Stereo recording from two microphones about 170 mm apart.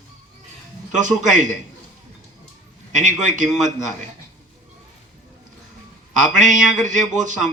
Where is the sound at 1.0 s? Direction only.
45° right (ahead or behind).